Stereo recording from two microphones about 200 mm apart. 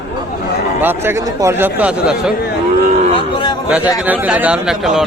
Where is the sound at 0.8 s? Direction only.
10° right (ahead or behind).